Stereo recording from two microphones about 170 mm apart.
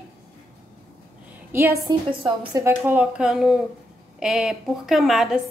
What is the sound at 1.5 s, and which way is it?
A woman's voice, 15° right (ahead or behind).